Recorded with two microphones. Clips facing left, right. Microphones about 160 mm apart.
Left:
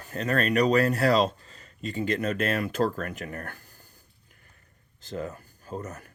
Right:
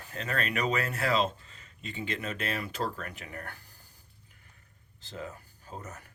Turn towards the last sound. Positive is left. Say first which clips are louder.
# left 7 dB
turn(degrees=45)  # may be behind; listen again after turning